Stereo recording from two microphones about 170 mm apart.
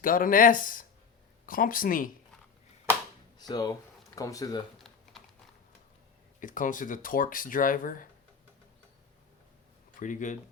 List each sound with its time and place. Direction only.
0.0 s speech: 55° left (ahead or behind)
3.3 s speech: 25° left (ahead or behind)
6.4 s speech: 50° left (ahead or behind)
10.0 s speech: 50° left (ahead or behind)